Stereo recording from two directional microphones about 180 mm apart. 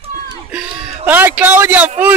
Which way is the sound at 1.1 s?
10° right (ahead or behind).